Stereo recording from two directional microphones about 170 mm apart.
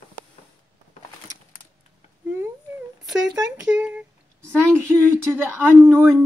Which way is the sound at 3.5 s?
5° right (ahead or behind).